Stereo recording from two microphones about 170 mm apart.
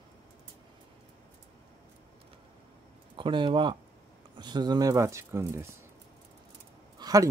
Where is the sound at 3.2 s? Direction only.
30° right (ahead or behind).